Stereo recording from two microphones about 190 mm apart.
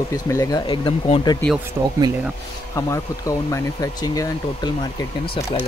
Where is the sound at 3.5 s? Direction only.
20° left (ahead or behind).